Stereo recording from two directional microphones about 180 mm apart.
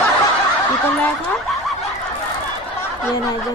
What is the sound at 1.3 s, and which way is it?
Snicker, centre (ahead or behind).